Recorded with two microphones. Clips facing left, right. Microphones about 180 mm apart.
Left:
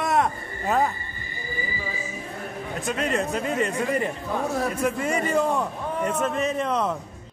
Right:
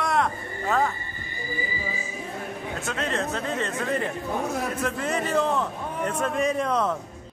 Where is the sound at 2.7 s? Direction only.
15° left (ahead or behind).